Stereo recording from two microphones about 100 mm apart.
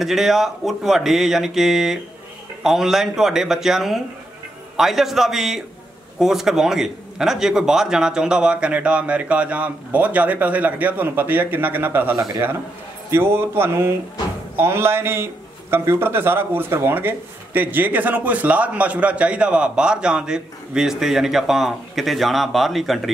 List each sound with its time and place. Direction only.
0.0 s a man's voice: centre (ahead or behind)